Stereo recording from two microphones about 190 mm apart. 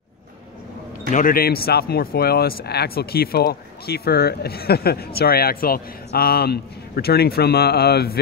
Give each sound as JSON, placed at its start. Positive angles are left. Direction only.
{"t": 1.1, "sound": "speech", "side_deg": 50}